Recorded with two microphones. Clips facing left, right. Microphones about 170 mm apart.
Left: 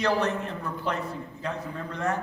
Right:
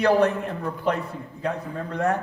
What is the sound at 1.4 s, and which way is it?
Speech, 55° right (ahead or behind).